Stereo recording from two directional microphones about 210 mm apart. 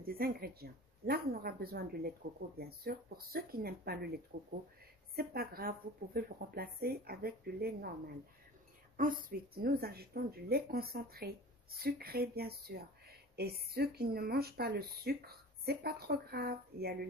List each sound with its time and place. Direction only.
0.0 s speech: 45° right (ahead or behind)
8.9 s speech: 40° right (ahead or behind)